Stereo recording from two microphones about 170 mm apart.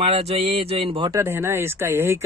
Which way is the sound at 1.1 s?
15° right (ahead or behind).